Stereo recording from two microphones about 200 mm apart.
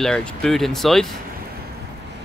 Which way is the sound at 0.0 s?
5° left (ahead or behind).